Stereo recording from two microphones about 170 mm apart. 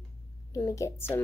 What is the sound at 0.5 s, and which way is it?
Speech, 20° left (ahead or behind).